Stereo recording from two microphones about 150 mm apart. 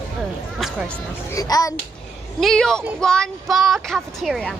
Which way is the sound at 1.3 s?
25° left (ahead or behind).